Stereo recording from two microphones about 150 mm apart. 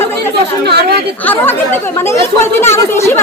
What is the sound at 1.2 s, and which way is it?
Speech, 15° left (ahead or behind).